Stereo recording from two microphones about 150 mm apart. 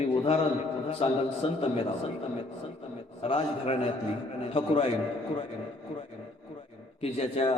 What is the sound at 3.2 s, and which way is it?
A man's voice, 40° left (ahead or behind).